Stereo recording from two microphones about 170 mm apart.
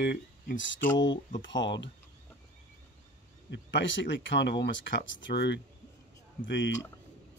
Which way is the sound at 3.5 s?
90° left.